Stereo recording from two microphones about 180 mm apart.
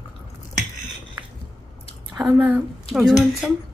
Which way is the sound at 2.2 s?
10° right (ahead or behind).